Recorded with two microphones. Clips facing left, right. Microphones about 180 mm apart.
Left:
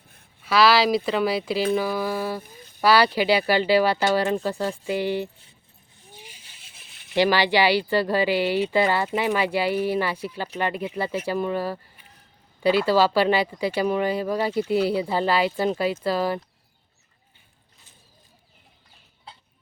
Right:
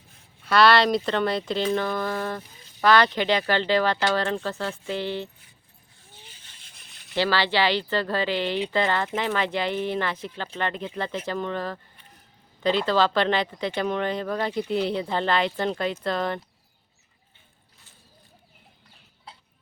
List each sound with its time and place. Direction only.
0.4 s speech: 5° left (ahead or behind)
6.0 s a sound: 15° left (ahead or behind)
7.2 s speech: 15° left (ahead or behind)